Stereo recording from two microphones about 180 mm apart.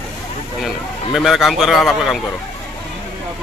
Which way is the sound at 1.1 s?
Centre (ahead or behind).